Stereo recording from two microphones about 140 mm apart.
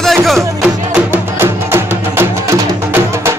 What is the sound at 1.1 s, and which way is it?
Music, 15° right (ahead or behind).